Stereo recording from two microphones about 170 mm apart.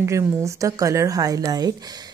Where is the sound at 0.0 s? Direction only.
15° right (ahead or behind).